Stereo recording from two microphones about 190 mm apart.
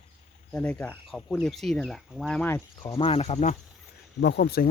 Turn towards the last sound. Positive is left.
turn(degrees=55)  # may be behind; listen again after turning